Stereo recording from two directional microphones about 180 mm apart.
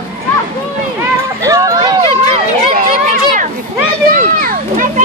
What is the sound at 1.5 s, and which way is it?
Run, 20° right (ahead or behind).